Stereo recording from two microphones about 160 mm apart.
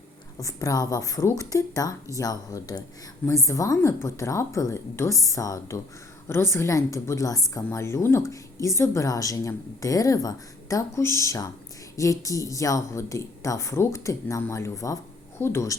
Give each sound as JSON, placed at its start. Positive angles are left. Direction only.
{"t": 0.3, "sound": "a woman's voice", "side_deg": 20}